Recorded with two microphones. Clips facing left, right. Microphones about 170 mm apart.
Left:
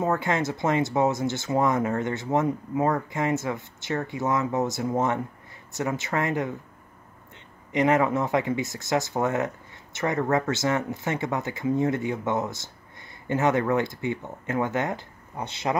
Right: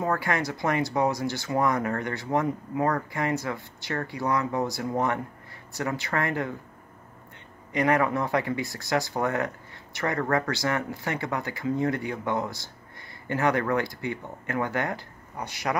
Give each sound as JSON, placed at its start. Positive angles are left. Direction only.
{"t": 0.0, "sound": "speech", "side_deg": 20}
{"t": 7.7, "sound": "speech", "side_deg": 20}